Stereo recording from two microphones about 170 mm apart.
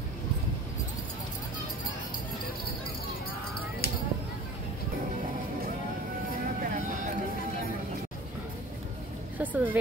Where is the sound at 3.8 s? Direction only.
60° left (ahead or behind).